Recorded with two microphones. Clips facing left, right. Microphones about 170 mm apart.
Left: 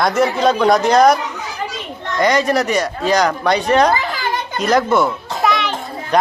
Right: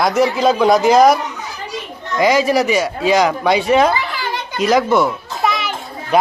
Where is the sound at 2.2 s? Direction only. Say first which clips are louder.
Right 2 dB; 5° right (ahead or behind).